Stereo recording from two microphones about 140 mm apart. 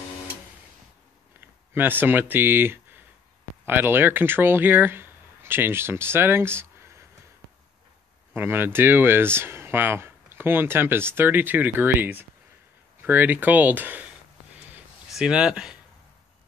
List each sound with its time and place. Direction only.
1.4 s speech: 15° right (ahead or behind)
8.4 s speech: 15° right (ahead or behind)
15.0 s speech: 5° right (ahead or behind)